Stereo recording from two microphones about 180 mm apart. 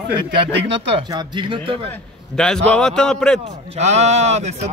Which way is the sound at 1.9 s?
5° left (ahead or behind).